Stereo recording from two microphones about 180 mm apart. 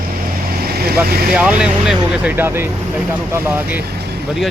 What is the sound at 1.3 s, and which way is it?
Speech, 5° right (ahead or behind).